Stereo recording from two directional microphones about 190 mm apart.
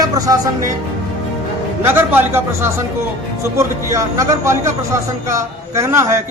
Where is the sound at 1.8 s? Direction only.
10° right (ahead or behind).